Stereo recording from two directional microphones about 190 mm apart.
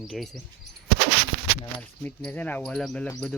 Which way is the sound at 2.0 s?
10° left (ahead or behind).